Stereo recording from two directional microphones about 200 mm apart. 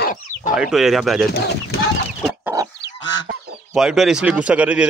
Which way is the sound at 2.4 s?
15° right (ahead or behind).